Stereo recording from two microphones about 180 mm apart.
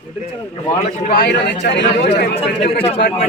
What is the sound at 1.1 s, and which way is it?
Speech, 60° left (ahead or behind).